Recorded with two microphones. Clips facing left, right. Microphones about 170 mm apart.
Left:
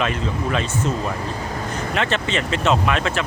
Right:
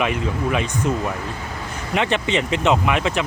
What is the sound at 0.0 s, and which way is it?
Speech, 15° right (ahead or behind).